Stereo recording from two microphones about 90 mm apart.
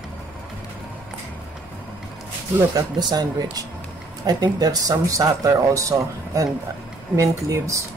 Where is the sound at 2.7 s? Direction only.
50° right (ahead or behind).